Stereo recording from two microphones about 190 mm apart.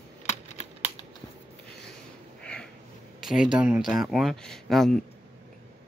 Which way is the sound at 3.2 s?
5° right (ahead or behind).